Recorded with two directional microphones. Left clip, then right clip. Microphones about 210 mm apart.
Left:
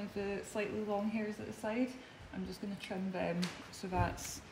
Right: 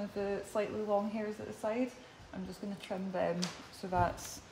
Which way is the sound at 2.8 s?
20° right (ahead or behind).